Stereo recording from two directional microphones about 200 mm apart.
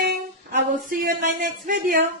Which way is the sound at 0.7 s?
40° right (ahead or behind).